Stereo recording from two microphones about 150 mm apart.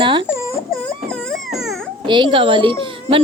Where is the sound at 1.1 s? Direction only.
Centre (ahead or behind).